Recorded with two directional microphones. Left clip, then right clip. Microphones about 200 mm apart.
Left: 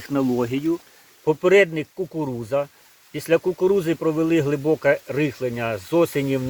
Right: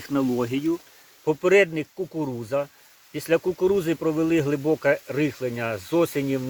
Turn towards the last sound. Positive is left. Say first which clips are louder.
# left 3 dB
turn(degrees=0)  # may be behind; listen again after turning